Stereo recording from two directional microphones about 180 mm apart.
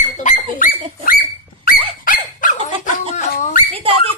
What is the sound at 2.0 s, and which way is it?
Squeak, 45° left (ahead or behind).